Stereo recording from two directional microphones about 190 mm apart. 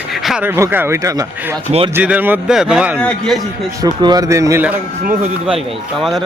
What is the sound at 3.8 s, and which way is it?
Speech, 20° right (ahead or behind).